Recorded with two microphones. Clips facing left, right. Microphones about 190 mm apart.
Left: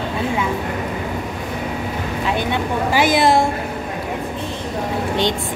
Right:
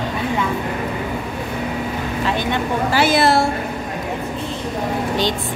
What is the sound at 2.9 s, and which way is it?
Music, 15° left (ahead or behind).